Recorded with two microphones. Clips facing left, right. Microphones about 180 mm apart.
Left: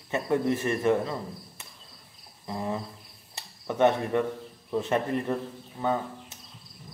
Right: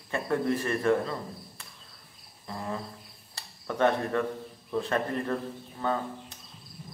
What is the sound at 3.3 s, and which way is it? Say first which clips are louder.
Speech: left 3 dB; 20° left (ahead or behind).